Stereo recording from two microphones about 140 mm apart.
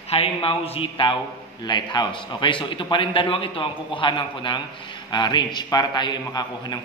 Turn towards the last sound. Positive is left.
turn(degrees=30)  # may be behind; listen again after turning